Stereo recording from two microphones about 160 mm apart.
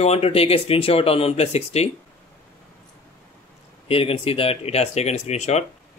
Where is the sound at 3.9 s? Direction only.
35° left (ahead or behind).